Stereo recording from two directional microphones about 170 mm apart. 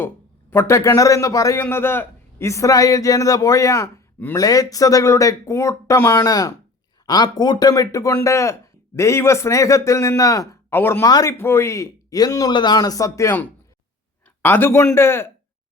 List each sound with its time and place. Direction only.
0.5 s a man's voice: 15° left (ahead or behind)